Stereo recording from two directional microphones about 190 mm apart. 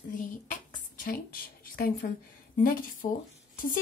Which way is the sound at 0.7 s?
45° left (ahead or behind).